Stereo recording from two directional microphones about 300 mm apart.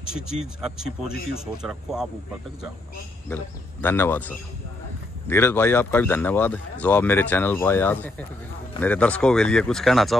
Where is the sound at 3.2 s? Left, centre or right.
Centre.